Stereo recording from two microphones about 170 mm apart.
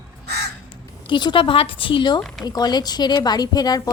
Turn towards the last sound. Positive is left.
turn(degrees=25)  # may be behind; listen again after turning